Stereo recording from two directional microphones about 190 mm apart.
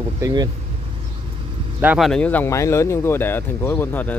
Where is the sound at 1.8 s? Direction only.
10° right (ahead or behind).